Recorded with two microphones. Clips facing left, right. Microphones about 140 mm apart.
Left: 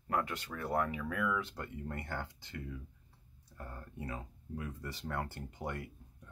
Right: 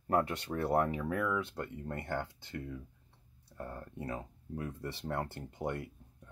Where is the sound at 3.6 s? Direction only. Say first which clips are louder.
Right 4 dB; 25° right (ahead or behind).